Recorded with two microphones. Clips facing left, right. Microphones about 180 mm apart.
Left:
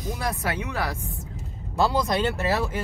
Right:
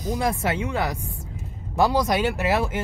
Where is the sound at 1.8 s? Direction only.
15° right (ahead or behind).